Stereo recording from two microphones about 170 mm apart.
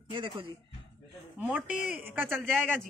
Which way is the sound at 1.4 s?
5° right (ahead or behind).